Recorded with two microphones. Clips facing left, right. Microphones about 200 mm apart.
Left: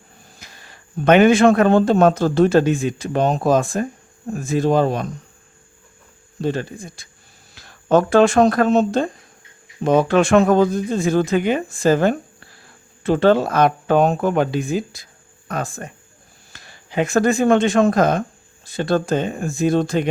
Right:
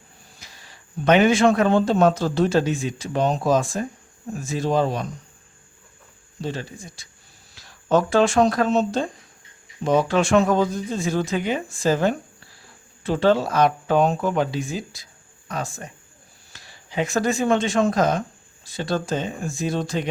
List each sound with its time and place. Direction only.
0.3 s a man's voice: 55° left (ahead or behind)
6.4 s a man's voice: 55° left (ahead or behind)